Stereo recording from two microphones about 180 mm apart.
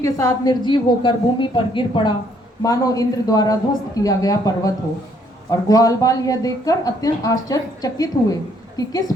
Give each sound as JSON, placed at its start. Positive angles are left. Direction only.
{"t": 0.0, "sound": "speech", "side_deg": 20}